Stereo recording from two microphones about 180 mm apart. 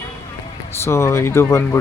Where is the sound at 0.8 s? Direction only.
15° left (ahead or behind).